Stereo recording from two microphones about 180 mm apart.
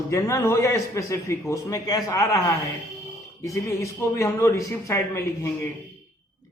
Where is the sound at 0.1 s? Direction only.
15° left (ahead or behind).